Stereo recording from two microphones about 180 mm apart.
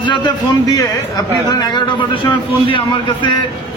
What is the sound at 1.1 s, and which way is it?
Speech, 20° left (ahead or behind).